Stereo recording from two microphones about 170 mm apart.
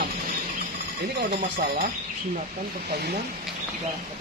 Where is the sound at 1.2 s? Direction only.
70° right (ahead or behind).